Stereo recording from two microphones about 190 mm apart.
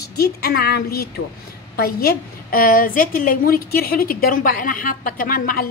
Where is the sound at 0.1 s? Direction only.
55° left (ahead or behind).